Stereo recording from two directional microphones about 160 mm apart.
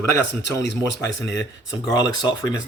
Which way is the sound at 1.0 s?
25° left (ahead or behind).